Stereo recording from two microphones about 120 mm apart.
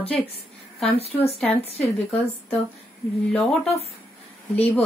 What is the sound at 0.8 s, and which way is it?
Speech, 55° left (ahead or behind).